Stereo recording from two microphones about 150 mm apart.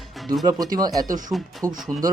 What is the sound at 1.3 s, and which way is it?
Speech, centre (ahead or behind).